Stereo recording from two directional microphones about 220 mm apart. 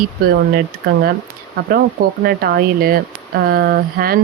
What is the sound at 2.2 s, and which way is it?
Speech, 45° right (ahead or behind).